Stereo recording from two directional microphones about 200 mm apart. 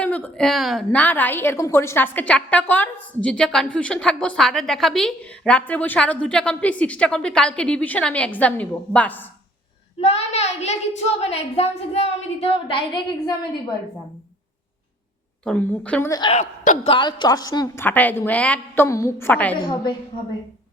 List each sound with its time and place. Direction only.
0.0 s a woman's voice: 5° left (ahead or behind)
10.0 s a child's voice: 30° left (ahead or behind)
15.4 s a woman's voice: 5° left (ahead or behind)
16.3 s a woman's voice: 35° left (ahead or behind)
17.8 s a woman's voice: 10° left (ahead or behind)
19.6 s a woman's voice: 20° left (ahead or behind)